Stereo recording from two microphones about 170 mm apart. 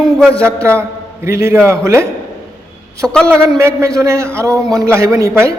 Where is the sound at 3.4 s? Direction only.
20° right (ahead or behind).